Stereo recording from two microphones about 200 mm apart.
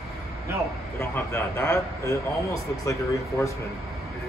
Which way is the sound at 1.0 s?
15° left (ahead or behind).